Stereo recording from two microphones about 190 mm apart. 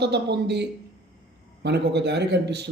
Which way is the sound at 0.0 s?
65° right (ahead or behind).